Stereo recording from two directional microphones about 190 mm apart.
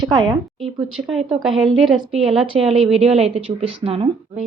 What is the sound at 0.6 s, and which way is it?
A woman's voice, 5° right (ahead or behind).